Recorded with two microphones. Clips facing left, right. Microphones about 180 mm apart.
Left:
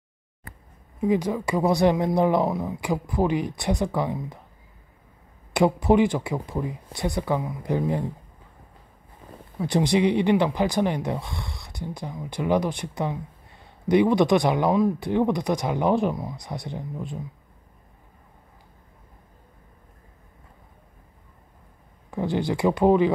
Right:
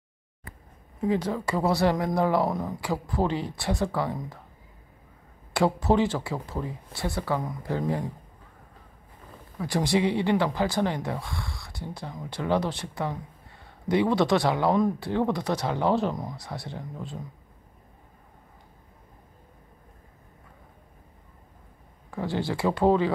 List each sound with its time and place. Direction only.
1.0 s speech: 15° left (ahead or behind)
2.5 s speech: 5° left (ahead or behind)
5.5 s speech: 15° left (ahead or behind)
9.6 s speech: 20° left (ahead or behind)
22.1 s speech: 20° left (ahead or behind)